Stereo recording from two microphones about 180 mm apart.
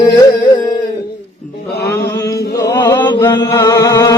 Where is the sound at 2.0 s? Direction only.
15° left (ahead or behind).